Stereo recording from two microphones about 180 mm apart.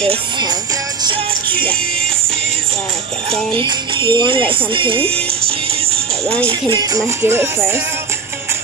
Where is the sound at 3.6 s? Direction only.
25° right (ahead or behind).